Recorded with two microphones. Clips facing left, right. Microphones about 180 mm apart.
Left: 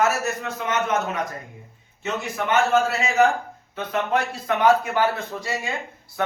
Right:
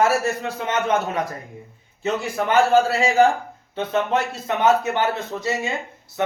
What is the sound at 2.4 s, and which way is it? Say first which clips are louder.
A man's voice: right 3 dB; 35° right (ahead or behind).